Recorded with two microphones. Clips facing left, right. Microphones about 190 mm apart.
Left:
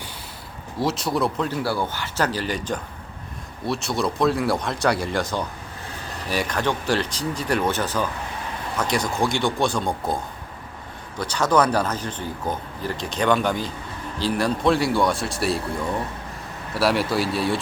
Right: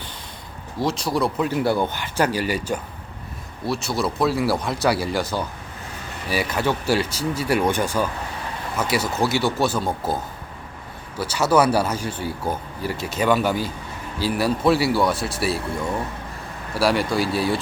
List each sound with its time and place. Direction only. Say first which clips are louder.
0.8 s speech: right 1 dB; centre (ahead or behind)
1.5 s a man's voice: right 4 dB; 20° right (ahead or behind); by 15.6 s centre (ahead or behind)
16.7 s speech: right 1 dB; centre (ahead or behind)